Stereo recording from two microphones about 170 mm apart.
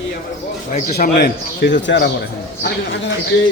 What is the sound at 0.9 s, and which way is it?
A man's voice, 65° left (ahead or behind).